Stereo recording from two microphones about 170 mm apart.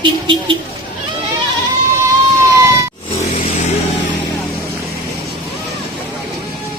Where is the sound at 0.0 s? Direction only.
30° right (ahead or behind).